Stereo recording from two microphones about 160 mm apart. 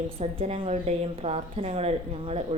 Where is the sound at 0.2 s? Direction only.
35° right (ahead or behind).